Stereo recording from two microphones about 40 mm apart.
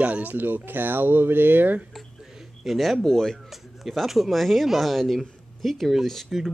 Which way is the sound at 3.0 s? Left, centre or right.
Centre.